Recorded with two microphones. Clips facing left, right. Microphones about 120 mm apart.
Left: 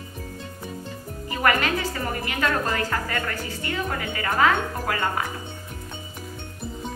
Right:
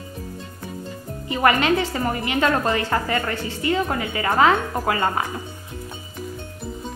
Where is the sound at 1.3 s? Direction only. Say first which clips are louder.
Right 4 dB; 20° right (ahead or behind).